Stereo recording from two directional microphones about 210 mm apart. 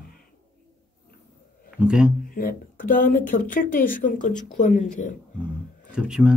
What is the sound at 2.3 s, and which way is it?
Speech, 40° left (ahead or behind).